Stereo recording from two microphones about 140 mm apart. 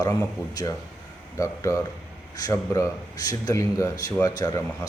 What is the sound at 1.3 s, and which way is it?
Speech, 20° left (ahead or behind).